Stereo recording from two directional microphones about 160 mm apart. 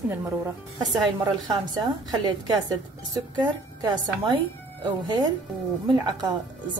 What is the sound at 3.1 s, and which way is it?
A woman's voice, 25° right (ahead or behind).